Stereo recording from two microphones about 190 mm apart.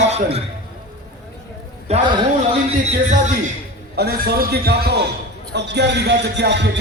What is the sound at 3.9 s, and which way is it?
Speech, 55° right (ahead or behind).